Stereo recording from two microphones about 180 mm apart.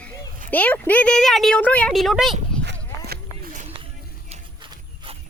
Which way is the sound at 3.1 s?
50° right (ahead or behind).